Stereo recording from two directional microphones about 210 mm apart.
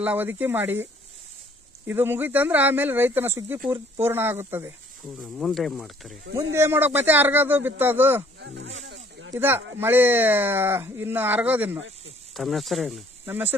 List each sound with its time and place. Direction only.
0.0 s speech: 10° right (ahead or behind)
1.9 s speech: 10° right (ahead or behind)
5.4 s speech: centre (ahead or behind)
6.6 s speech: 10° right (ahead or behind)
8.7 s speech: 70° right (ahead or behind)
9.3 s speech: 10° right (ahead or behind)